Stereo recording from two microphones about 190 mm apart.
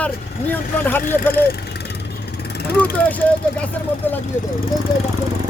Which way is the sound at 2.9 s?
10° left (ahead or behind).